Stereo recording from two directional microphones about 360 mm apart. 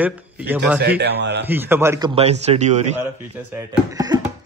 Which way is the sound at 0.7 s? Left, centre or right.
Right.